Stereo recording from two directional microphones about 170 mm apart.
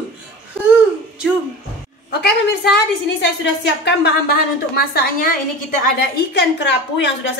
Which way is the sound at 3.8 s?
85° left.